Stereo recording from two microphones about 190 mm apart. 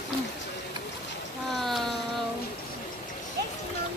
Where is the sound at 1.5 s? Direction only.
Centre (ahead or behind).